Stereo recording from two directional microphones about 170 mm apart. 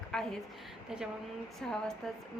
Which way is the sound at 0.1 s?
5° left (ahead or behind).